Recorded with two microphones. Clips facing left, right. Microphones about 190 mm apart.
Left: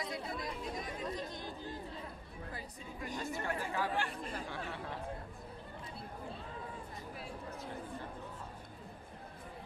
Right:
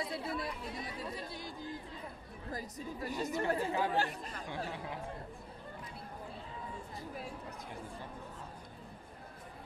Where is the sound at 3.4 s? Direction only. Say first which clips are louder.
Right 5 dB; 35° right (ahead or behind).